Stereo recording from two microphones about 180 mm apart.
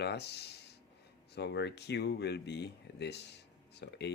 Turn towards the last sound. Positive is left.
turn(degrees=70)  # may be behind; listen again after turning